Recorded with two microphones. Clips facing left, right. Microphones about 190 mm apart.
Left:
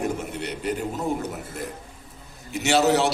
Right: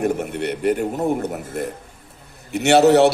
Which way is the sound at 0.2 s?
60° right (ahead or behind).